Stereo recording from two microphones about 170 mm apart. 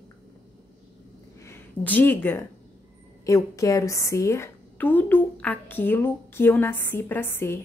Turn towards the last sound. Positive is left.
turn(degrees=15)  # may be behind; listen again after turning